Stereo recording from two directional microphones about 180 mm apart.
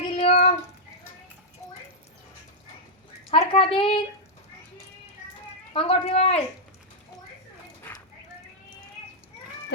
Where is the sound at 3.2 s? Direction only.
30° left (ahead or behind).